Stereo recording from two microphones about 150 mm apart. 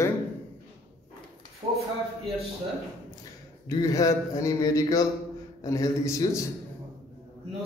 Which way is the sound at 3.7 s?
25° left (ahead or behind).